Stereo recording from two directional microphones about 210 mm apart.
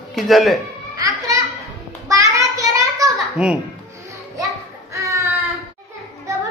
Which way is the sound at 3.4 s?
5° right (ahead or behind).